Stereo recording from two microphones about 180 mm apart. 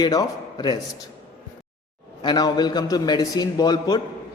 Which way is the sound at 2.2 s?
25° left (ahead or behind).